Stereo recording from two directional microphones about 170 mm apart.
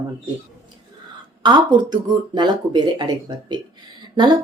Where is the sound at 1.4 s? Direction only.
25° right (ahead or behind).